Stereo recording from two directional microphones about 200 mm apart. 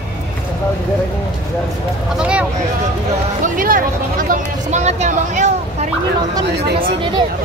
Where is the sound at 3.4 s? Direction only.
45° right (ahead or behind).